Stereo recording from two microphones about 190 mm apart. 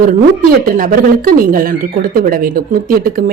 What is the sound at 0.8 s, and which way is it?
Speech, 45° right (ahead or behind).